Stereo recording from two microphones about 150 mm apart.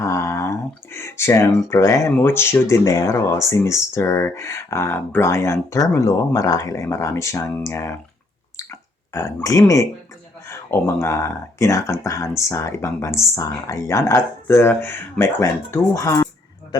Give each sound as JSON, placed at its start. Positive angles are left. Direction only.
{"t": 0.0, "sound": "speech", "side_deg": 20}
{"t": 9.1, "sound": "speech", "side_deg": 20}